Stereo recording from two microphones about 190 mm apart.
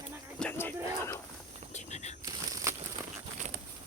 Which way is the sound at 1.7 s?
35° left (ahead or behind).